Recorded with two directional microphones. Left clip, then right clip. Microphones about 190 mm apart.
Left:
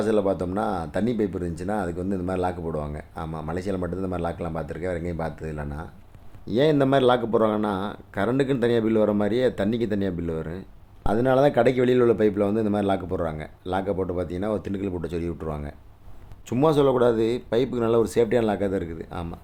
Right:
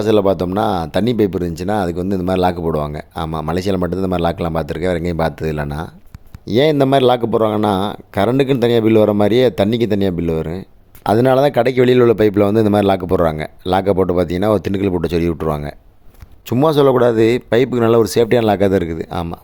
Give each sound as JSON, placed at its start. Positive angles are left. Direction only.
{"t": 0.1, "sound": "speech", "side_deg": -55}
{"t": 6.5, "sound": "a man's voice", "side_deg": -35}